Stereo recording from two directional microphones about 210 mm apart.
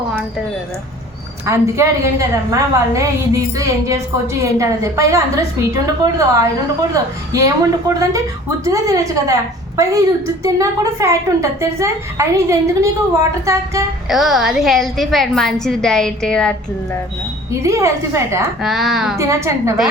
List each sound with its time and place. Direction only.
1.5 s a woman's voice: 15° right (ahead or behind)
14.1 s a woman's voice: centre (ahead or behind)
17.5 s a woman's voice: 15° right (ahead or behind)
18.6 s a woman's voice: centre (ahead or behind)
19.1 s a woman's voice: 15° right (ahead or behind)